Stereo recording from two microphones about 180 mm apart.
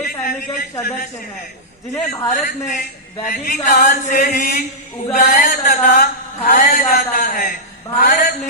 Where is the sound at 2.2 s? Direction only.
45° left (ahead or behind).